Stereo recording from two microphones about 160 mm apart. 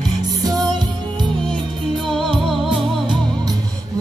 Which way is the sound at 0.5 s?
25° right (ahead or behind).